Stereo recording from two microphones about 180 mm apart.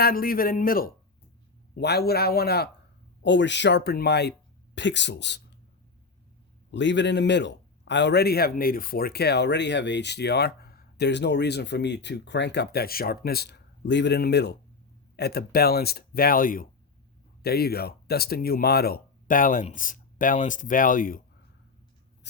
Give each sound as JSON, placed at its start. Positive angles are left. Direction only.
{"t": 0.0, "sound": "speech", "side_deg": 55}
{"t": 1.7, "sound": "speech", "side_deg": 65}
{"t": 3.2, "sound": "a man's voice", "side_deg": 80}
{"t": 6.7, "sound": "a man's voice", "side_deg": 85}
{"t": 17.4, "sound": "speech", "side_deg": 60}